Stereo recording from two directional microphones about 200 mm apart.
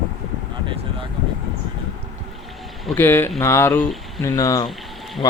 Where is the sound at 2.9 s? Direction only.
10° left (ahead or behind).